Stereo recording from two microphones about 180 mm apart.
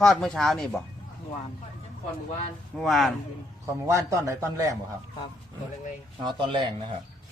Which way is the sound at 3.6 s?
15° right (ahead or behind).